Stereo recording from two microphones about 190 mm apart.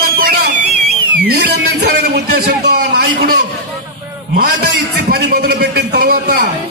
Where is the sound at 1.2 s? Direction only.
55° right (ahead or behind).